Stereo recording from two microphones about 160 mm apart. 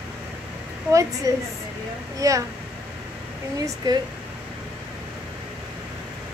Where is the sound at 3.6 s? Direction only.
25° right (ahead or behind).